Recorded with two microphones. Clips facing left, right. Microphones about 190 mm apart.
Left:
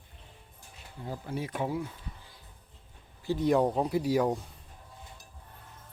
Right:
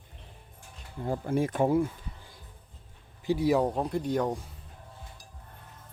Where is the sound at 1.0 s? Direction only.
50° right (ahead or behind).